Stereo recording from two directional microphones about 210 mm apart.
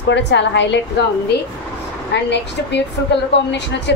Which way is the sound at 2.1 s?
55° left (ahead or behind).